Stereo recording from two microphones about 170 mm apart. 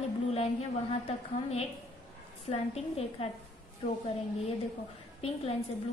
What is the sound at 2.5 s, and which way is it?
Speech, 35° left (ahead or behind).